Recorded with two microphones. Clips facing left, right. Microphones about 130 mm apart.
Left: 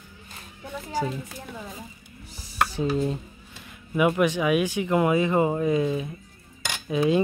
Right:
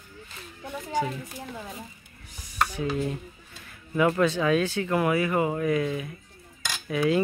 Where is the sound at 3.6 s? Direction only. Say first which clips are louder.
Left 1 dB; 15° left (ahead or behind).